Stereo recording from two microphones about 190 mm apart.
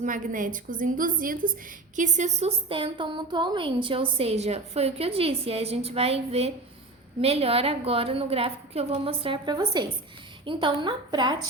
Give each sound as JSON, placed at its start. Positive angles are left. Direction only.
{"t": 0.0, "sound": "a woman's voice", "side_deg": -45}